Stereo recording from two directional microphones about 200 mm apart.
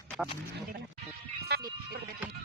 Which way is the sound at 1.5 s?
50° right (ahead or behind).